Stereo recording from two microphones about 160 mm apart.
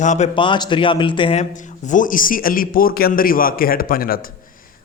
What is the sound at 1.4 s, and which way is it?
A man's voice, 50° left (ahead or behind).